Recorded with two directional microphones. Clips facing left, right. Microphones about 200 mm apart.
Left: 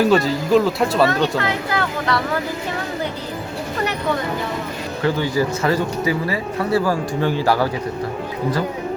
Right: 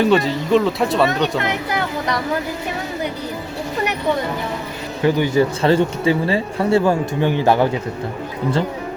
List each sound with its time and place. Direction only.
0.0 s speech: centre (ahead or behind)
1.4 s a sound: 20° right (ahead or behind)
5.0 s speech: 15° right (ahead or behind)